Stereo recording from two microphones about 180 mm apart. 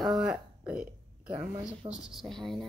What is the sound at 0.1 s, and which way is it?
Burping, 5° right (ahead or behind).